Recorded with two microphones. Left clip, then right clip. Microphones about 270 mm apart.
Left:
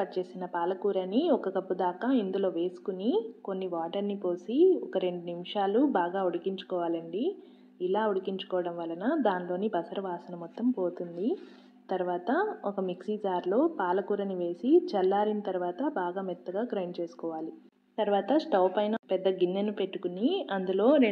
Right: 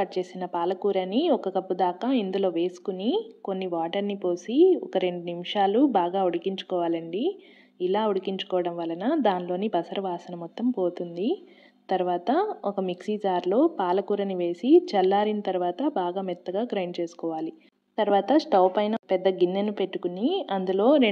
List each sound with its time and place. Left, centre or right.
0.0 s a woman's voice: right